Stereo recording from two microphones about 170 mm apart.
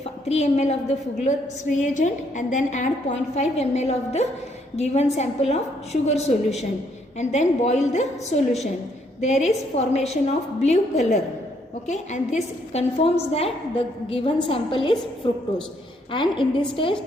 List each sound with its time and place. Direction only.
0.0 s a woman's voice: 40° left (ahead or behind)